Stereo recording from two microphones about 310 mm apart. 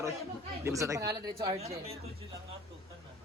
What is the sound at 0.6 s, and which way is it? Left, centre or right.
Speech, centre.